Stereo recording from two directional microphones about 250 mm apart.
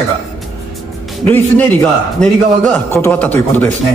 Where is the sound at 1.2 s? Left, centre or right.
Centre.